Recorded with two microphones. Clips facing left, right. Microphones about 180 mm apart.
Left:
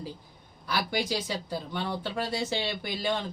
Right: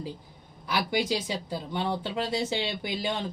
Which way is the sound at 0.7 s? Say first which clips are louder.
Right 2 dB; 20° right (ahead or behind).